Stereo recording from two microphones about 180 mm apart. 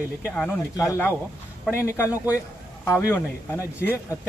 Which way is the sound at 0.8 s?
15° left (ahead or behind).